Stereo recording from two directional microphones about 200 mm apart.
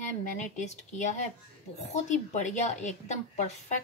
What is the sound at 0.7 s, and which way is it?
A woman's voice, 35° left (ahead or behind).